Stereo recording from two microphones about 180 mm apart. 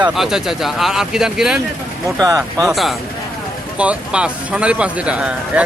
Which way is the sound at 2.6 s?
Centre (ahead or behind).